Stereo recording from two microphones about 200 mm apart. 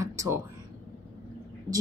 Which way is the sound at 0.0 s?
15° right (ahead or behind).